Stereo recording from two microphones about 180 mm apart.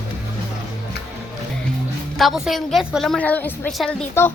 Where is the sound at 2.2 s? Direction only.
Centre (ahead or behind).